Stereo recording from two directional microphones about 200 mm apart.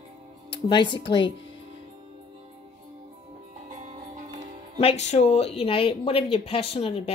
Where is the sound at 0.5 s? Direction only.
20° left (ahead or behind).